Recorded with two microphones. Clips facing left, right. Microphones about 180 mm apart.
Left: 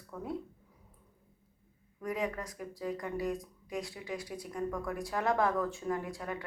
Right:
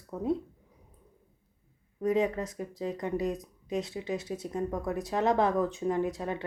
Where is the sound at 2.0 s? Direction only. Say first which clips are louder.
Right 8 dB; 25° right (ahead or behind).